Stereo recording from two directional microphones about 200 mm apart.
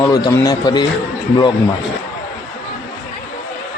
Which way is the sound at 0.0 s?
15° left (ahead or behind).